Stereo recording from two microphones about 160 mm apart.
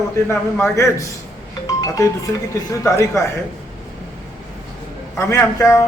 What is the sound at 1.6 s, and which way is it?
Music, 20° left (ahead or behind).